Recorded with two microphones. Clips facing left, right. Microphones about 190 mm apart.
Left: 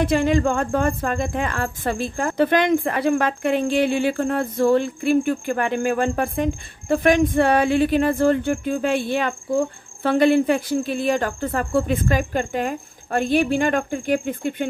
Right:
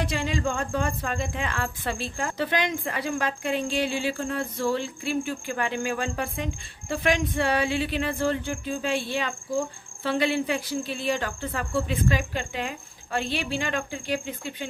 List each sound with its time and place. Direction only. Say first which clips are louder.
0.0 s speech: left 9 dB; 55° left (ahead or behind)